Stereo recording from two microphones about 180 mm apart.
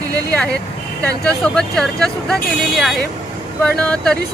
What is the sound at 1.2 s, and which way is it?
Speech, 5° left (ahead or behind).